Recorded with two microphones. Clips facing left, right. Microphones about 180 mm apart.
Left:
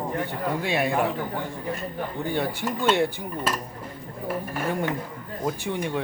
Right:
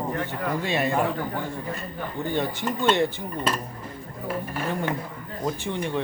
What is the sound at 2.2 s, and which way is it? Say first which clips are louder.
Speech: right 1 dB; 10° left (ahead or behind).